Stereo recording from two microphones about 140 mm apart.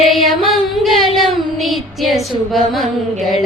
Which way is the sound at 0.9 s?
Centre (ahead or behind).